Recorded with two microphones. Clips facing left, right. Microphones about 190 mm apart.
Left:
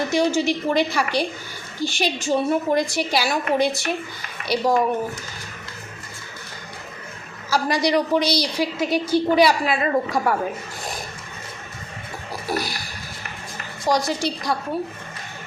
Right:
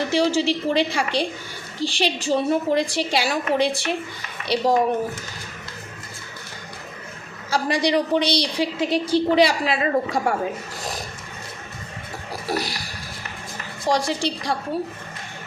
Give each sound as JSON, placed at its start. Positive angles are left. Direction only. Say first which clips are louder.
{"t": 0.1, "sound": "a woman's voice", "louder": "right 1 dB", "side_deg": -35}
{"t": 7.5, "sound": "a woman's voice", "louder": "left 1 dB", "side_deg": -30}
{"t": 12.5, "sound": "a woman's voice", "louder": "even", "side_deg": -30}
{"t": 13.9, "sound": "a woman's voice", "louder": "even", "side_deg": -30}